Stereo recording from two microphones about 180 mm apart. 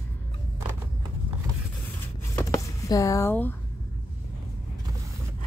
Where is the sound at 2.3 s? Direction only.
15° left (ahead or behind).